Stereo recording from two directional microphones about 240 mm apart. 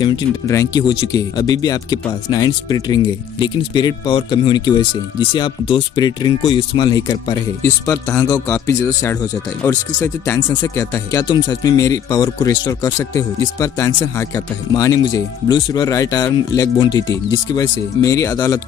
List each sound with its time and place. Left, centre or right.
0.0 s speech: centre